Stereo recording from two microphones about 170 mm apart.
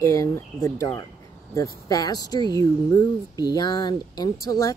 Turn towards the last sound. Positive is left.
turn(degrees=20)  # may be behind; listen again after turning